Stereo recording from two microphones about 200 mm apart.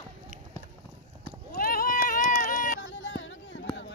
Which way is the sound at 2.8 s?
70° left (ahead or behind).